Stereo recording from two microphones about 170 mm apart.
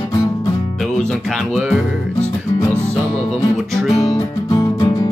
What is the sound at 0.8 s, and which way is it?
Music, 5° left (ahead or behind).